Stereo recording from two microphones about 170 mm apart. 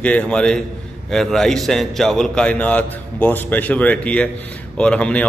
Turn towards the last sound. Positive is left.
turn(degrees=5)  # may be behind; listen again after turning